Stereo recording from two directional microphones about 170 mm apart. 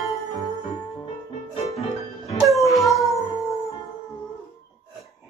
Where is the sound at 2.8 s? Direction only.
20° left (ahead or behind).